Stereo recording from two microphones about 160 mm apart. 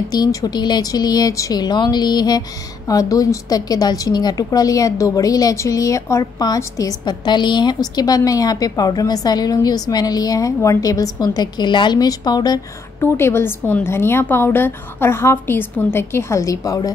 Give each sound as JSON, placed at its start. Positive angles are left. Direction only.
{"t": 0.1, "sound": "a woman's voice", "side_deg": 25}
{"t": 13.0, "sound": "a woman's voice", "side_deg": 15}